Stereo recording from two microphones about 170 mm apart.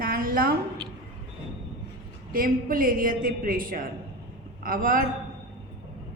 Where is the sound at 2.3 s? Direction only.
55° right (ahead or behind).